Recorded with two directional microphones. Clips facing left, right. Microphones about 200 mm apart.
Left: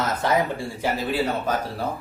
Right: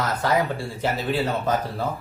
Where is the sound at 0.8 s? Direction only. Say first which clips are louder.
Even; 10° left (ahead or behind).